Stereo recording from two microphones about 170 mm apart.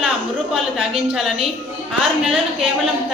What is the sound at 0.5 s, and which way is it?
A woman's voice, centre (ahead or behind).